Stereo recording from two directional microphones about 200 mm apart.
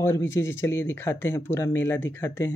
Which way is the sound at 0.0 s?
10° left (ahead or behind).